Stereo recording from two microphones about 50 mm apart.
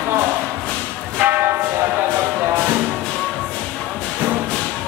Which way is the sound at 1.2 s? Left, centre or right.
Right.